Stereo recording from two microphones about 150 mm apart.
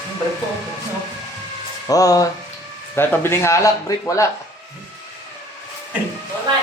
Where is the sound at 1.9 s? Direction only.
25° left (ahead or behind).